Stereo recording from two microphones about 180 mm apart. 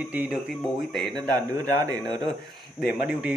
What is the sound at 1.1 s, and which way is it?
Speech, 15° right (ahead or behind).